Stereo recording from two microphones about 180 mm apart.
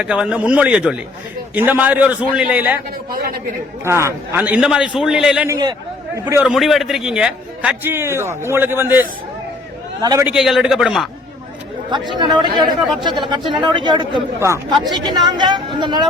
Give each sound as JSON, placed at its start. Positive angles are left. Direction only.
{"t": 0.0, "sound": "a man's voice", "side_deg": -5}
{"t": 3.1, "sound": "speech", "side_deg": -55}
{"t": 3.8, "sound": "a man's voice", "side_deg": -15}
{"t": 5.5, "sound": "a man's voice", "side_deg": -20}
{"t": 6.5, "sound": "a man's voice", "side_deg": 0}
{"t": 10.2, "sound": "a man's voice", "side_deg": -5}
{"t": 11.9, "sound": "a man's voice", "side_deg": -25}